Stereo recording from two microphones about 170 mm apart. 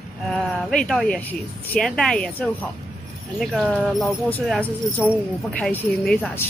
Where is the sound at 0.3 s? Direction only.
5° left (ahead or behind).